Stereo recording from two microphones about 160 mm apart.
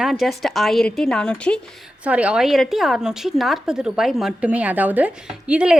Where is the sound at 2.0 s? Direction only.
10° right (ahead or behind).